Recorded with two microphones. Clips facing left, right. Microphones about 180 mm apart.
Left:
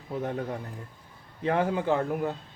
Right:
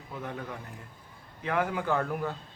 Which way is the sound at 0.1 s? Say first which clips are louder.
Left 7 dB; 35° left (ahead or behind).